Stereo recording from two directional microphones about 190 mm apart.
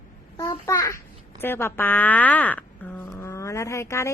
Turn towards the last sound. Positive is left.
turn(degrees=15)  # may be behind; listen again after turning